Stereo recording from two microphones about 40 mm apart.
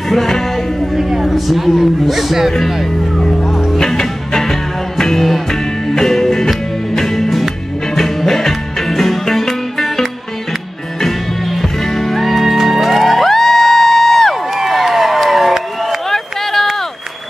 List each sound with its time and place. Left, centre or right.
0.1 s music: centre
0.9 s a sound: centre
1.8 s a man's voice: centre
2.8 s speech: centre
3.5 s music: centre
13.3 s crowd: centre
14.6 s a sound: centre